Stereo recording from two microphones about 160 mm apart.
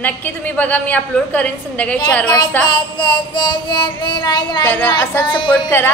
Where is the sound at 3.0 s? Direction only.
30° left (ahead or behind).